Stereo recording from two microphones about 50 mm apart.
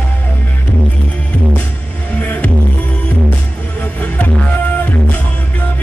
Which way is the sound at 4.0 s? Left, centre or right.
Left.